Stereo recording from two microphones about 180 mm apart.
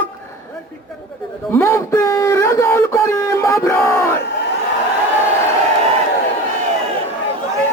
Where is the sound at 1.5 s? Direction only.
15° left (ahead or behind).